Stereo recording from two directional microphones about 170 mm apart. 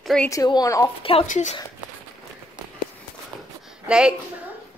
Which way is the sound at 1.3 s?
45° left (ahead or behind).